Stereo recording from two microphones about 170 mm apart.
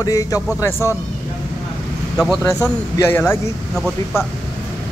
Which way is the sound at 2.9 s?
15° left (ahead or behind).